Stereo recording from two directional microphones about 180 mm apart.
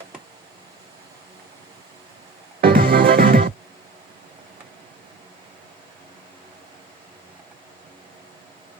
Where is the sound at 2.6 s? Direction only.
55° right (ahead or behind).